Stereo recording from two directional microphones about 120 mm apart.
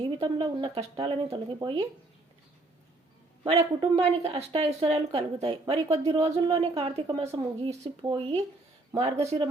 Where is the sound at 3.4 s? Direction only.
45° right (ahead or behind).